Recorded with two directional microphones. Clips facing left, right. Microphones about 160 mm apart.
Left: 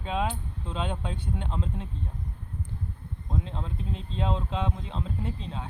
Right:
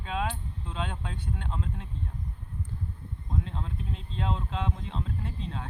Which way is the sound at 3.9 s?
25° left (ahead or behind).